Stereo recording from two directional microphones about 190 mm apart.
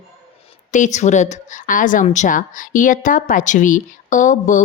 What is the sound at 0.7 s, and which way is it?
A woman's voice, 40° left (ahead or behind).